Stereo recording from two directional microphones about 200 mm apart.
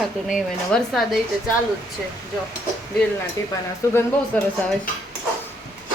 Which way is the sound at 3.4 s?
15° left (ahead or behind).